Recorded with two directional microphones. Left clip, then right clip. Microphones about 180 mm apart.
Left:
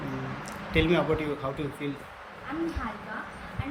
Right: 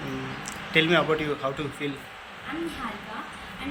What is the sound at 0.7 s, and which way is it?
Speech, 10° left (ahead or behind).